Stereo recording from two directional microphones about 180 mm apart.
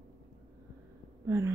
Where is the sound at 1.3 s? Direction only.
15° right (ahead or behind).